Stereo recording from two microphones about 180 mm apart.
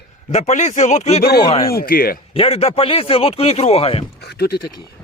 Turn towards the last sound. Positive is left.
turn(degrees=60)  # may be behind; listen again after turning